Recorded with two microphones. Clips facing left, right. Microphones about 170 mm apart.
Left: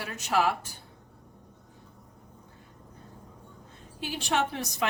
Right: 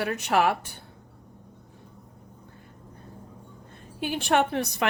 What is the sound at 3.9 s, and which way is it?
Speech, 55° right (ahead or behind).